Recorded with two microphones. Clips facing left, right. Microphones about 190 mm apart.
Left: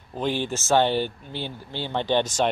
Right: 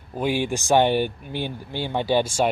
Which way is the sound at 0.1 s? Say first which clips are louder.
Right 3 dB; 10° right (ahead or behind).